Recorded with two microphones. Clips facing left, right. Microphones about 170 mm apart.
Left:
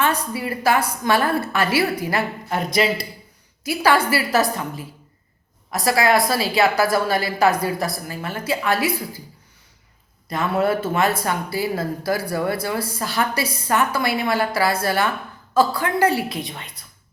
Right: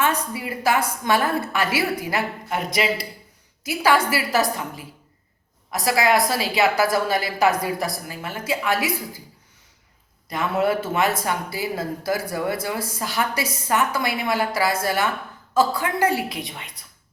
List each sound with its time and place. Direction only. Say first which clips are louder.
0.3 s a woman's voice: left 2 dB; 20° right (ahead or behind)
10.6 s a woman's voice: left 1 dB; 15° right (ahead or behind)